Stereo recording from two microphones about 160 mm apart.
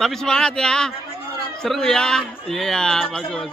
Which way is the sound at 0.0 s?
5° left (ahead or behind).